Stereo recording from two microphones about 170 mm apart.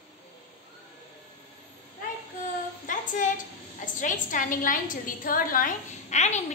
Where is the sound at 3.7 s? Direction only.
50° left (ahead or behind).